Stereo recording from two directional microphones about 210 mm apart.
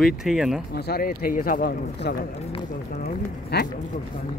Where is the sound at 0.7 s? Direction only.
50° left (ahead or behind).